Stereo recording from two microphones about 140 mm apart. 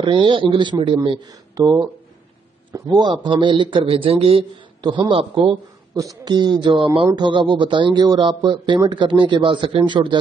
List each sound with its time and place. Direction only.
0.0 s speech: 35° right (ahead or behind)